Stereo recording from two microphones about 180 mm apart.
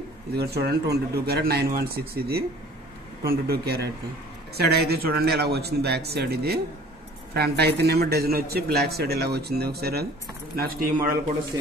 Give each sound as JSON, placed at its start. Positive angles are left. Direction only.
{"t": 0.3, "sound": "a man's voice", "side_deg": -60}